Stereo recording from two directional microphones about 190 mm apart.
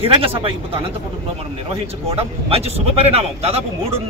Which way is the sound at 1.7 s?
30° right (ahead or behind).